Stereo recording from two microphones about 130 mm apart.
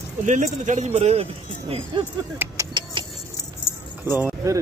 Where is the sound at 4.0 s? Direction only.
15° right (ahead or behind).